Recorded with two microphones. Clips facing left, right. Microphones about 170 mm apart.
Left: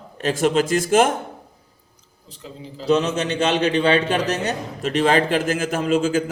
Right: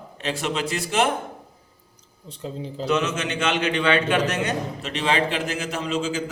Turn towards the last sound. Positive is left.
turn(degrees=55)  # may be behind; listen again after turning